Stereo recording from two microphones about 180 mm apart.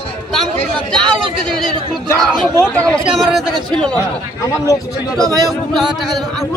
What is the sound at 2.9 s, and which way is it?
Speech, centre (ahead or behind).